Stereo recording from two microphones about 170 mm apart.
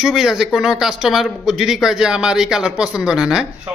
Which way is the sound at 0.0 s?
Centre (ahead or behind).